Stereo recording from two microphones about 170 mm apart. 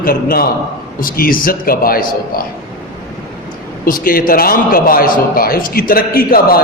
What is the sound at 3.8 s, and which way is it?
A man's voice, 55° left (ahead or behind).